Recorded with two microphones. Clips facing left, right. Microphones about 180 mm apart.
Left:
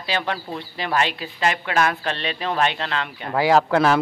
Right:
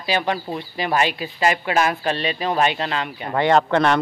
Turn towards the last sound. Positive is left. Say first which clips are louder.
# even
turn(degrees=5)  # may be behind; listen again after turning